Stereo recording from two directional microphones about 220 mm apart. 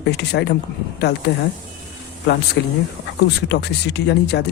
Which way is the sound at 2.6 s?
55° left (ahead or behind).